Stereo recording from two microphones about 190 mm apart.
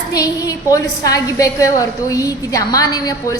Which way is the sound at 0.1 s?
20° left (ahead or behind).